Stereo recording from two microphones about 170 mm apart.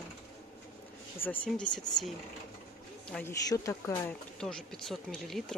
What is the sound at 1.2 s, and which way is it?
Speech, 10° left (ahead or behind).